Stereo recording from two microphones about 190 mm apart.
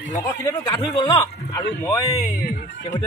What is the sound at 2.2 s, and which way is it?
Speech, 40° left (ahead or behind).